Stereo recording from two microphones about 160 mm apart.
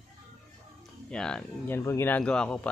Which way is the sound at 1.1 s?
5° left (ahead or behind).